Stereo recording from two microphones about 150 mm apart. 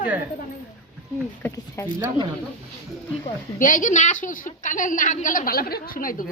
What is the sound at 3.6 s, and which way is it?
A woman's voice, 60° left (ahead or behind).